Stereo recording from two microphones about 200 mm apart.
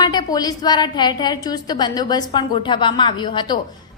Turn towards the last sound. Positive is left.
turn(degrees=25)  # may be behind; listen again after turning